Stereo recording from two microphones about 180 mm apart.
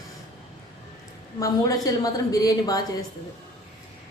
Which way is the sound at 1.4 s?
20° left (ahead or behind).